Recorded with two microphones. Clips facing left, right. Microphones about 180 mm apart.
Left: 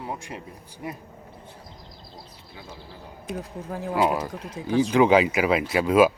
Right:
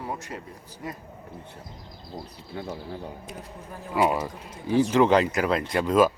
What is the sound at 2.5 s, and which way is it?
Speech, 65° right (ahead or behind).